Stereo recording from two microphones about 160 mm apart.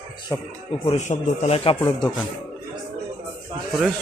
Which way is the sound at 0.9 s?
45° left (ahead or behind).